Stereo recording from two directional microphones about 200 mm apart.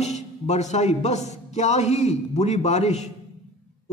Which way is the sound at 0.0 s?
35° left (ahead or behind).